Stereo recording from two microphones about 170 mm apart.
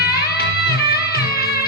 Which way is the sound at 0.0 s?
65° left (ahead or behind).